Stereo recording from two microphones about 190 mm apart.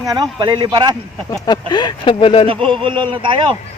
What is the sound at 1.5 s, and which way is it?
Speech, 20° left (ahead or behind).